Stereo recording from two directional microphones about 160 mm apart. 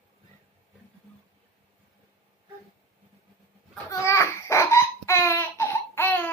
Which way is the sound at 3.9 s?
15° left (ahead or behind).